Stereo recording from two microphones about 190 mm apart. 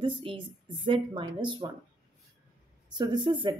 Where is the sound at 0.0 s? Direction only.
25° right (ahead or behind).